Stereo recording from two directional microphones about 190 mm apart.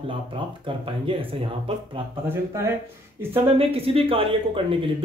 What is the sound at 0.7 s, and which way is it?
Speech, 25° right (ahead or behind).